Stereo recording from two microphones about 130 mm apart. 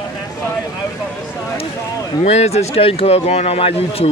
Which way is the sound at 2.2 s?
60° left (ahead or behind).